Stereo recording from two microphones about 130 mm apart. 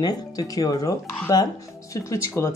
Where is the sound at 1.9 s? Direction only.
25° left (ahead or behind).